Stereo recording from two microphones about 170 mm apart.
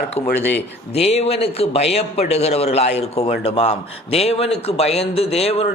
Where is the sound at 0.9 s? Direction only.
35° left (ahead or behind).